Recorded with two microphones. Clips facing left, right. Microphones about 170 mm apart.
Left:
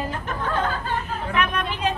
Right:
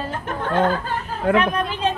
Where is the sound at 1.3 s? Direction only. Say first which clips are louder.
Right 9 dB; 65° right (ahead or behind).